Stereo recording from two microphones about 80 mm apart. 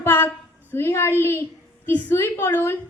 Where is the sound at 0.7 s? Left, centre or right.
Left.